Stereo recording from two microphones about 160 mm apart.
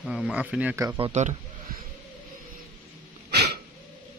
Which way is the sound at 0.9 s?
35° right (ahead or behind).